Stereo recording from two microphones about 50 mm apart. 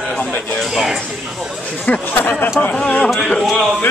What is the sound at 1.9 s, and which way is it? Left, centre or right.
Speech, left.